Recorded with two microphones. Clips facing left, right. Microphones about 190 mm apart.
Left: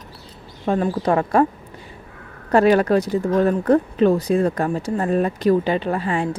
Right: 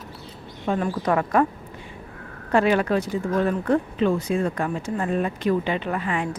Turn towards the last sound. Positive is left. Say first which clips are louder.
# left 4 dB
turn(degrees=30)  # may be behind; listen again after turning